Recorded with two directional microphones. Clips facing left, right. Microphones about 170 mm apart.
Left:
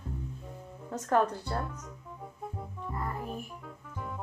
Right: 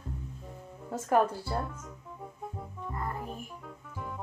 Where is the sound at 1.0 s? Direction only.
5° right (ahead or behind).